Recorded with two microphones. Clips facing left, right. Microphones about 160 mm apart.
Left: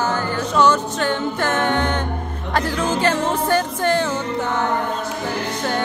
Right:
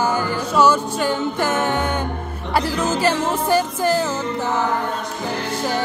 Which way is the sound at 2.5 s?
10° right (ahead or behind).